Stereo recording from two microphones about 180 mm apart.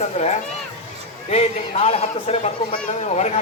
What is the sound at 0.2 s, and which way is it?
Speech, 40° left (ahead or behind).